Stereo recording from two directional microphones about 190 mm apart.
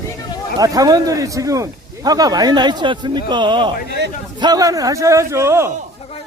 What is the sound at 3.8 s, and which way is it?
Speech, 65° right (ahead or behind).